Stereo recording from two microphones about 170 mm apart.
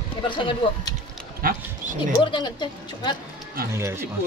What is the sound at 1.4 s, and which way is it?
Speech, 50° right (ahead or behind).